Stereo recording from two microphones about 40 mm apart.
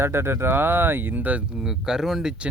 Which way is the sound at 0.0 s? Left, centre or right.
Right.